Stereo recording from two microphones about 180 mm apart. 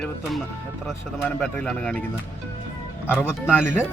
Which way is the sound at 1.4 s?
5° left (ahead or behind).